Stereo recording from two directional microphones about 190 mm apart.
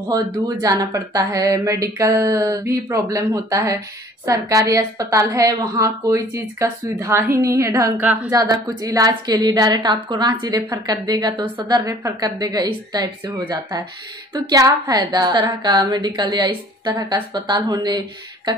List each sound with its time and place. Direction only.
0.1 s speech: 20° right (ahead or behind)
8.3 s a woman's voice: 20° right (ahead or behind)